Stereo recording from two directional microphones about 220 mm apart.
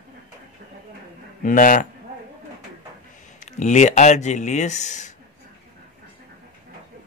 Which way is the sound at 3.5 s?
35° left (ahead or behind).